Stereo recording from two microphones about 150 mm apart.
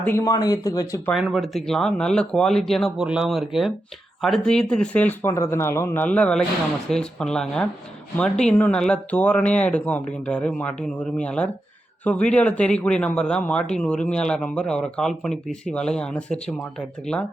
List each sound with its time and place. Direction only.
0.0 s speech: 15° left (ahead or behind)
0.3 s speech: 25° left (ahead or behind)
1.1 s speech: centre (ahead or behind)